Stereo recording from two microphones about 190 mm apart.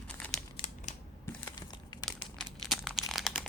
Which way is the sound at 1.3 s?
20° left (ahead or behind).